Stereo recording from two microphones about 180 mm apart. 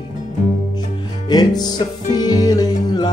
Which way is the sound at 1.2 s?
20° left (ahead or behind).